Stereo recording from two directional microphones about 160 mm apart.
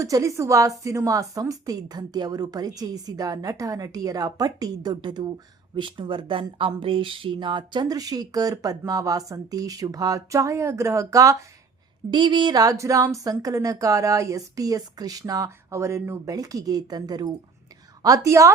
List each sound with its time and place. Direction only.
0.0 s speech: 20° right (ahead or behind)